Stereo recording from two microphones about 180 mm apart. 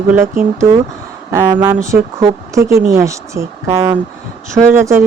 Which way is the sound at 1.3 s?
20° right (ahead or behind).